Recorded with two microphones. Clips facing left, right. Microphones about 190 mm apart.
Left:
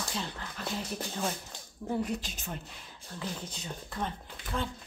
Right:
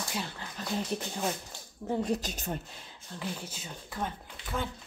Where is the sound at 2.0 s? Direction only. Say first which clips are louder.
Right 5 dB; 40° right (ahead or behind).